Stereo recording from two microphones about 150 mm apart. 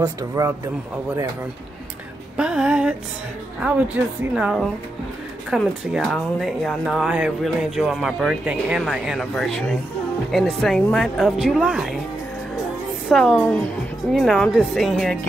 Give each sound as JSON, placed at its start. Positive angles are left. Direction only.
{"t": 0.4, "sound": "speech", "side_deg": -25}
{"t": 2.3, "sound": "music", "side_deg": -5}
{"t": 3.6, "sound": "a woman's voice", "side_deg": -10}
{"t": 13.1, "sound": "speech", "side_deg": 5}